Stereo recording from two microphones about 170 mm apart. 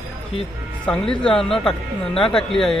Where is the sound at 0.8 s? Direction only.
5° left (ahead or behind).